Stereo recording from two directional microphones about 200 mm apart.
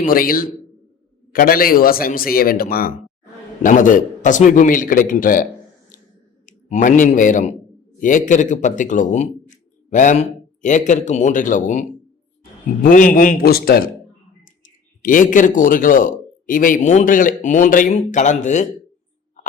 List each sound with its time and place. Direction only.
0.0 s a man's voice: 45° left (ahead or behind)
5.9 s a sound: 40° left (ahead or behind)
6.4 s a man's voice: 40° left (ahead or behind)